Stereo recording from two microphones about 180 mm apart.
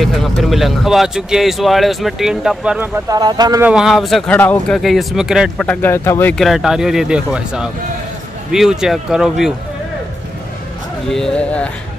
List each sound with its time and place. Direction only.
0.0 s speech: centre (ahead or behind)
3.1 s speech: 20° right (ahead or behind)
3.6 s speech: 5° right (ahead or behind); by 6.3 s 15° left (ahead or behind)
6.3 s speech: centre (ahead or behind)
11.1 s speech: 5° left (ahead or behind)